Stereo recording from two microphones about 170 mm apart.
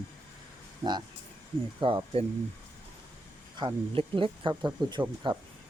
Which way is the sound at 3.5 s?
30° right (ahead or behind).